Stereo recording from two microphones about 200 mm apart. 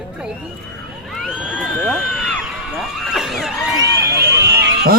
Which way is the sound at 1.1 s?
Centre (ahead or behind).